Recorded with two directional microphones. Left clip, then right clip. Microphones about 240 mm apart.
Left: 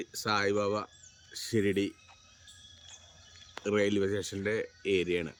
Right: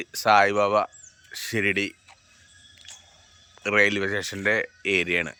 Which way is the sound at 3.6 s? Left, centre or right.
Centre.